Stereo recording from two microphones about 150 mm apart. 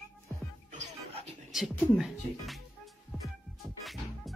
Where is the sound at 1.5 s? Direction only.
Centre (ahead or behind).